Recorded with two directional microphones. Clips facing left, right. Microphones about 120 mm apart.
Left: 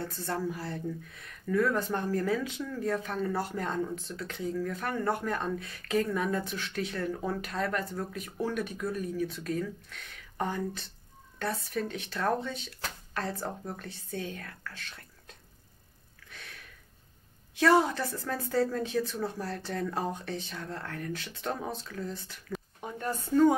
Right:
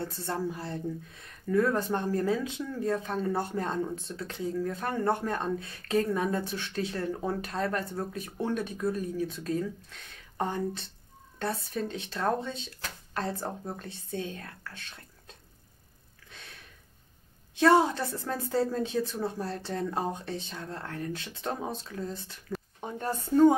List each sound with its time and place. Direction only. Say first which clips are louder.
0.0 s a woman's voice: right 1 dB; 25° right (ahead or behind)
16.3 s a sound: left 1 dB; 25° right (ahead or behind)
17.6 s a woman's voice: right 2 dB; 25° right (ahead or behind)